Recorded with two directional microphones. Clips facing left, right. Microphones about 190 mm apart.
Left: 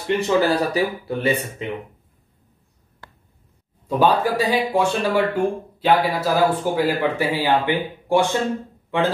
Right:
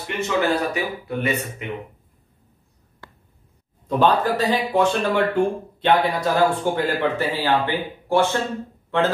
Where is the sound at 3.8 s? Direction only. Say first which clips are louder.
Even; 10° left (ahead or behind).